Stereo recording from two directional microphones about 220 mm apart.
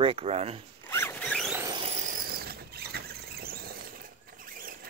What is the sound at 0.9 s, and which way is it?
Zipper, 10° left (ahead or behind).